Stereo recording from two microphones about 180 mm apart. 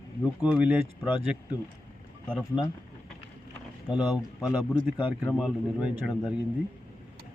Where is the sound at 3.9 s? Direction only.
25° left (ahead or behind).